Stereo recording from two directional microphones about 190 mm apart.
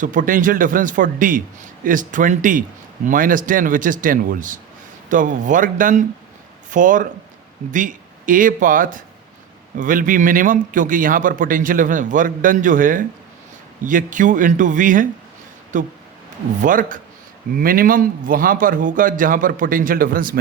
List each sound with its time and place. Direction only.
0.0 s a man's voice: 45° right (ahead or behind)